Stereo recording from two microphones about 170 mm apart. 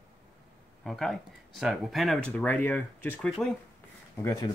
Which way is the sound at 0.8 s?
Centre (ahead or behind).